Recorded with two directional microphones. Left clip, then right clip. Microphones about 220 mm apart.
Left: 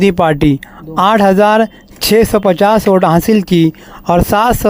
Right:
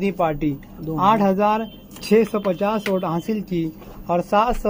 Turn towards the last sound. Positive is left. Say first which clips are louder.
# left 8 dB
turn(degrees=50)  # may be behind; listen again after turning